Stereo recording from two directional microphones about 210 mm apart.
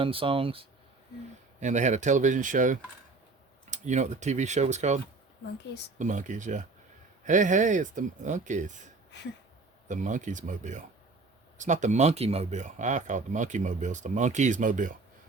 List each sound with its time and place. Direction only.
0.0 s speech: 25° right (ahead or behind)
6.0 s speech: 35° right (ahead or behind)
9.9 s speech: 35° right (ahead or behind)